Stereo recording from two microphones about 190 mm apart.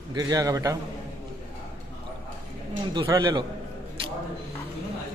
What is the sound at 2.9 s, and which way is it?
Speech, 20° right (ahead or behind).